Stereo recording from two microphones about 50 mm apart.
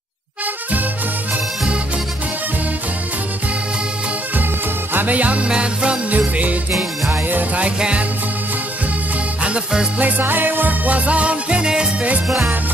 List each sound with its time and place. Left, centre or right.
4.9 s music: right
5.5 s music: centre
6.0 s music: right
7.6 s music: right
9.9 s music: right; by 11.9 s centre